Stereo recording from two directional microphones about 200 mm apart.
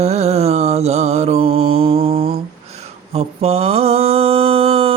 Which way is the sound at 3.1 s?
30° right (ahead or behind).